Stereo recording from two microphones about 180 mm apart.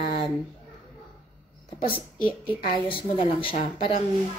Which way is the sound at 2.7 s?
30° left (ahead or behind).